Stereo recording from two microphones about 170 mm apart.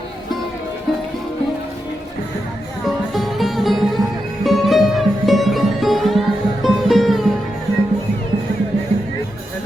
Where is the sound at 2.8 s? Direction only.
Centre (ahead or behind).